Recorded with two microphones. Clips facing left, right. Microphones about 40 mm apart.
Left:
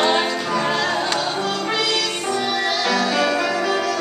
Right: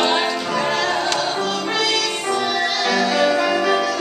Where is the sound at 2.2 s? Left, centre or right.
Centre.